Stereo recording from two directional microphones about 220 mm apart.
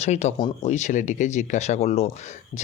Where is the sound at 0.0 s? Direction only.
30° left (ahead or behind).